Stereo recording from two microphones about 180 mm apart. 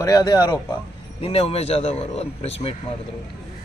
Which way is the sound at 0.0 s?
20° left (ahead or behind).